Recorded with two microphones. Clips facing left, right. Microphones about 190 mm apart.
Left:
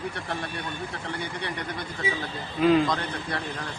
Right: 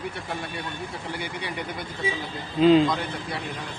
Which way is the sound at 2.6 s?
25° right (ahead or behind).